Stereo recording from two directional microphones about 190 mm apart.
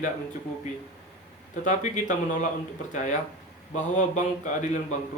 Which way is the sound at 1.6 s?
40° left (ahead or behind).